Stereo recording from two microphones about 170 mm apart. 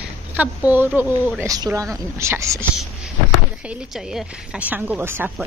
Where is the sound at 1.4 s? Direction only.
20° right (ahead or behind).